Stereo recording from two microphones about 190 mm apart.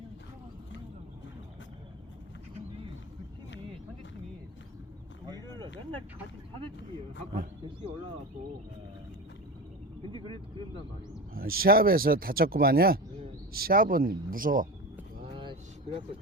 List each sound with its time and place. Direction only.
11.3 s speech: 50° right (ahead or behind)
15.3 s vehicle: 25° right (ahead or behind)